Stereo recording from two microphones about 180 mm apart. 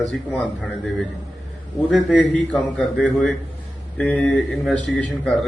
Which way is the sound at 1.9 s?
Centre (ahead or behind).